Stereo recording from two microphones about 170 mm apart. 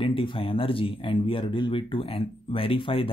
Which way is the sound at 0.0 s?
30° left (ahead or behind).